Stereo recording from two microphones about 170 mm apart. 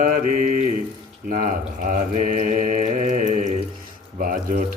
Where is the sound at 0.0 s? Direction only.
50° right (ahead or behind).